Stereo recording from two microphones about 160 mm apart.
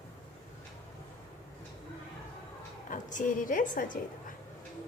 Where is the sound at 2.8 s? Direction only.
55° left (ahead or behind).